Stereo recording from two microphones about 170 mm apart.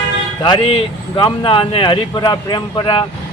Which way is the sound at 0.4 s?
25° left (ahead or behind).